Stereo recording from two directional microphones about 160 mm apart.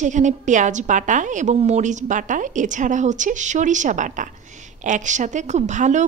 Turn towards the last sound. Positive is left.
turn(degrees=-50)  # may be behind; listen again after turning